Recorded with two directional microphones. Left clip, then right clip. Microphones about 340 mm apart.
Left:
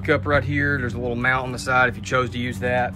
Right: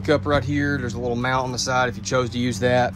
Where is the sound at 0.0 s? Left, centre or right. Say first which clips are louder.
Even; centre.